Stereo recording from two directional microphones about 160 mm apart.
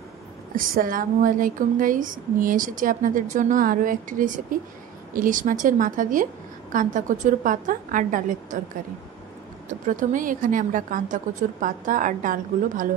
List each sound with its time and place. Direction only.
0.6 s a woman's voice: 60° right (ahead or behind)
9.7 s a woman's voice: 55° right (ahead or behind)